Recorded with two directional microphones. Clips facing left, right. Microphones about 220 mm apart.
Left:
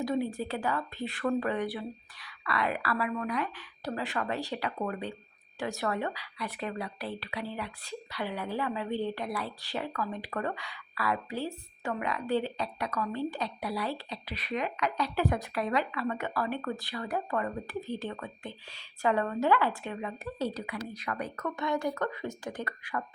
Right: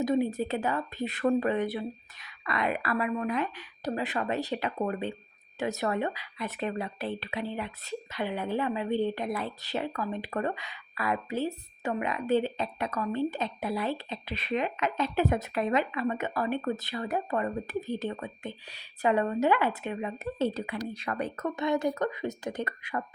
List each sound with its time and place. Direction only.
0.0 s a woman's voice: 20° right (ahead or behind)